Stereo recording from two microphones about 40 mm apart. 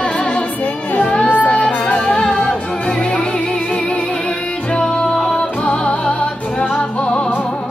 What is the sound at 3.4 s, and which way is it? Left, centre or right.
Music, left.